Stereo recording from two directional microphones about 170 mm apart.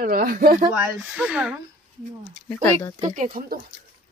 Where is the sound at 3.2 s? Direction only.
60° right (ahead or behind).